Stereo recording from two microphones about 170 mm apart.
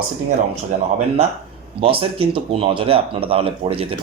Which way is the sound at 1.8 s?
35° right (ahead or behind).